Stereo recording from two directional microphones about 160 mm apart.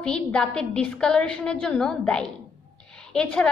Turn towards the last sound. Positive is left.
turn(degrees=5)  # may be behind; listen again after turning